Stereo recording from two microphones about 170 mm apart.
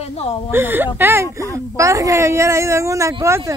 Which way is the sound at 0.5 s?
10° right (ahead or behind).